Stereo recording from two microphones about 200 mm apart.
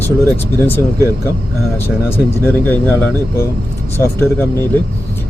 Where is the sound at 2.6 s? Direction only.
10° left (ahead or behind).